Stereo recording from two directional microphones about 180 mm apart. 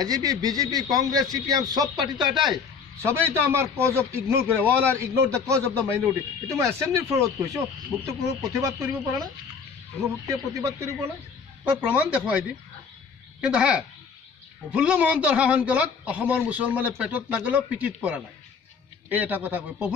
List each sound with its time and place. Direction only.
0.0 s a man's voice: 20° right (ahead or behind)
2.2 s speech: centre (ahead or behind)
3.0 s speech: 15° right (ahead or behind)
10.2 s speech: 20° right (ahead or behind)